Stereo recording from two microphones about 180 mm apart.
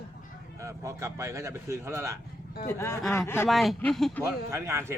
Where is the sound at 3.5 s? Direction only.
Centre (ahead or behind).